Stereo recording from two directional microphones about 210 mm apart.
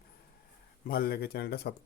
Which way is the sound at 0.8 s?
45° left (ahead or behind).